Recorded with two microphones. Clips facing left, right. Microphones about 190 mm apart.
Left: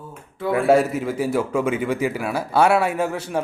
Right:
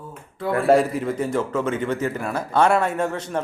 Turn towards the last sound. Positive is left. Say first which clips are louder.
# left 1 dB
turn(degrees=10)  # may be behind; listen again after turning